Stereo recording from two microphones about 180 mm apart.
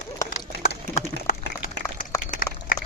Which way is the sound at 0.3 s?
40° left (ahead or behind).